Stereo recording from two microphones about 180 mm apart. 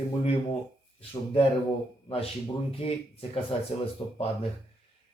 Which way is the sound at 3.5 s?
30° left (ahead or behind).